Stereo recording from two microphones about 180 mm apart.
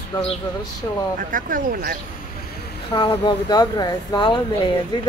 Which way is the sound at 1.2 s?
50° right (ahead or behind).